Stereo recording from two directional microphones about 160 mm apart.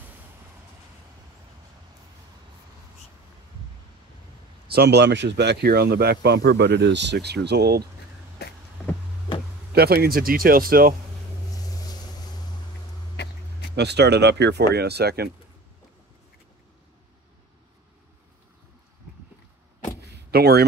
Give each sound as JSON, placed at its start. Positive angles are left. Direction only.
{"t": 4.6, "sound": "speech", "side_deg": -85}
{"t": 8.4, "sound": "a sound", "side_deg": 90}
{"t": 9.7, "sound": "speech", "side_deg": -75}
{"t": 13.1, "sound": "a sound", "side_deg": 90}
{"t": 13.7, "sound": "speech", "side_deg": -90}
{"t": 20.0, "sound": "power windows", "side_deg": -80}